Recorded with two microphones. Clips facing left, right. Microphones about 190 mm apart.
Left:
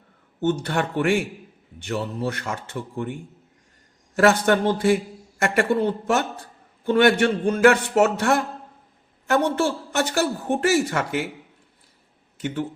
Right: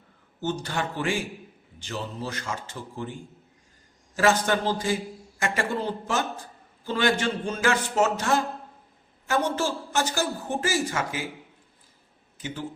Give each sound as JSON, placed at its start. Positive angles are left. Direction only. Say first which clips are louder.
{"t": 0.3, "sound": "a woman's voice", "louder": "left 6 dB", "side_deg": 60}
{"t": 12.4, "sound": "speech", "louder": "left 8 dB", "side_deg": 60}